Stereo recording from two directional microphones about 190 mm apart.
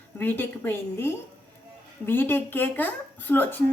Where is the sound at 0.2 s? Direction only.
10° left (ahead or behind).